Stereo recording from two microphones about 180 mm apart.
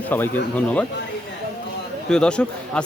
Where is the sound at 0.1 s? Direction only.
10° left (ahead or behind).